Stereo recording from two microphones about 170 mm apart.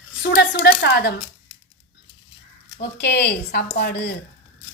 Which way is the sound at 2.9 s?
75° left (ahead or behind).